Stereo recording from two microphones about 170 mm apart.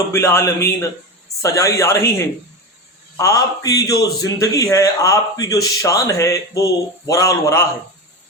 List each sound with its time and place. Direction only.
0.1 s a woman's voice: 15° left (ahead or behind)